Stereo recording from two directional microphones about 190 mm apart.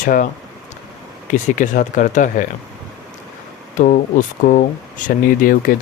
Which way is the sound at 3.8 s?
45° left (ahead or behind).